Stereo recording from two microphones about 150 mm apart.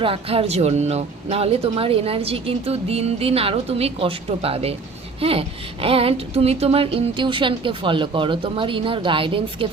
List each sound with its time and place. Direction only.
0.0 s speech: 40° right (ahead or behind)